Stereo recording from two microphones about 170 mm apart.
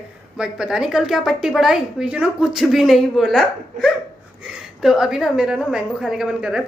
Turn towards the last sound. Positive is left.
turn(degrees=-5)  # may be behind; listen again after turning